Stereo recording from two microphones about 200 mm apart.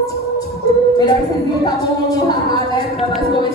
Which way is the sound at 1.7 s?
20° left (ahead or behind).